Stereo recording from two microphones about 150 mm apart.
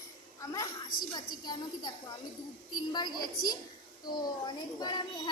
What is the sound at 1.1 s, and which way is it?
Speech, 30° left (ahead or behind).